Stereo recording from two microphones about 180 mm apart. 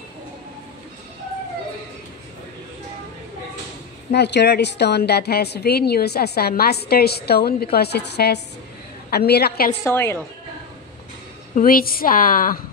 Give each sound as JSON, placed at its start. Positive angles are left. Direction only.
{"t": 4.1, "sound": "a woman's voice", "side_deg": 70}
{"t": 9.8, "sound": "a woman's voice", "side_deg": 15}
{"t": 11.5, "sound": "a woman's voice", "side_deg": 55}